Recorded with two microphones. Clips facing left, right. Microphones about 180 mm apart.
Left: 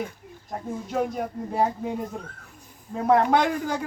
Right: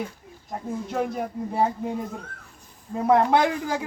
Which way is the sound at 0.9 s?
Centre (ahead or behind).